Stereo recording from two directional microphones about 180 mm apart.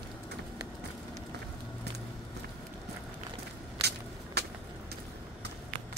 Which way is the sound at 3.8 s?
65° right (ahead or behind).